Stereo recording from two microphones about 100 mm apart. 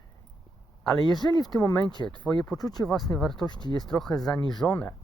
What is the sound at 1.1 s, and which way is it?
Speech, 45° left (ahead or behind).